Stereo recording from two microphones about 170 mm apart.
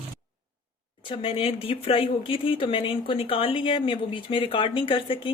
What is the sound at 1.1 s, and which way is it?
Speech, 30° left (ahead or behind).